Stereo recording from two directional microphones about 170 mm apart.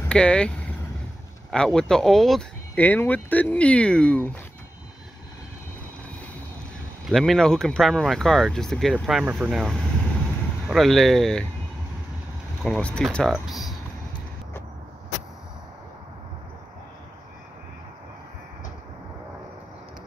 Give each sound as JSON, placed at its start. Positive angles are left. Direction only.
{"t": 0.1, "sound": "speech", "side_deg": 5}
{"t": 1.5, "sound": "speech", "side_deg": 5}
{"t": 7.1, "sound": "speech", "side_deg": 0}
{"t": 12.6, "sound": "speech", "side_deg": 5}